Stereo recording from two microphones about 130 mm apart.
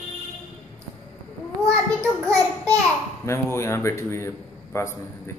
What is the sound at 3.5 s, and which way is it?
A man's voice, 20° left (ahead or behind).